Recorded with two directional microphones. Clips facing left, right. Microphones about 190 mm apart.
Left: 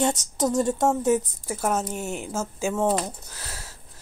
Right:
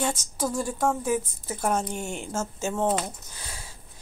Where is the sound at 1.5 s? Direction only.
5° left (ahead or behind).